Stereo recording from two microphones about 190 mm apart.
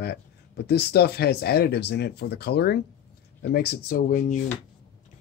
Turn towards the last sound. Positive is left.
turn(degrees=45)  # may be behind; listen again after turning